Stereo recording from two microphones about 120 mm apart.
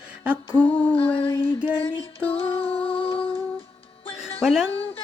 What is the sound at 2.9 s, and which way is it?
Humming, 50° left (ahead or behind).